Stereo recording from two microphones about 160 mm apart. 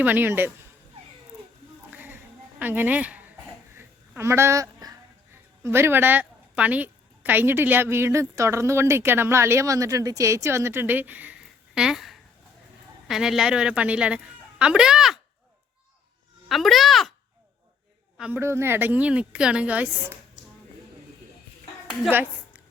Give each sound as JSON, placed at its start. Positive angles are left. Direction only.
{"t": 0.0, "sound": "a woman's voice", "side_deg": -10}
{"t": 1.9, "sound": "a sound", "side_deg": -10}
{"t": 3.8, "sound": "speech", "side_deg": -15}
{"t": 16.5, "sound": "speech", "side_deg": 0}
{"t": 18.2, "sound": "a woman's voice", "side_deg": -15}
{"t": 22.1, "sound": "a sound", "side_deg": -10}